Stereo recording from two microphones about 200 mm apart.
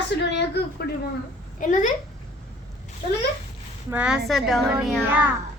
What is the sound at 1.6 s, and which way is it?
Speech, 40° left (ahead or behind).